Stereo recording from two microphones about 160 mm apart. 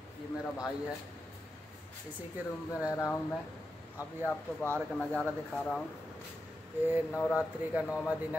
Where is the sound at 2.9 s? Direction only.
20° left (ahead or behind).